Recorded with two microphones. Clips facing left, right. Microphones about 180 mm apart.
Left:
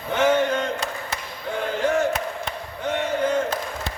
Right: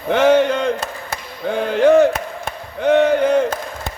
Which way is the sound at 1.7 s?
70° right (ahead or behind).